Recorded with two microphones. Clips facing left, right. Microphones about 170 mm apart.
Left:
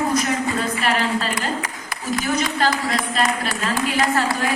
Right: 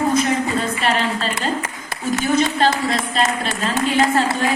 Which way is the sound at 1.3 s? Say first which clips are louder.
Right 2 dB; 25° right (ahead or behind).